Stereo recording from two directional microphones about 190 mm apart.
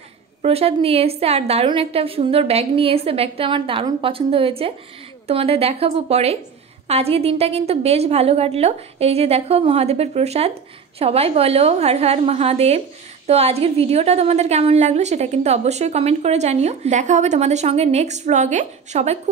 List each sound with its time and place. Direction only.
0.4 s a woman's voice: 30° right (ahead or behind)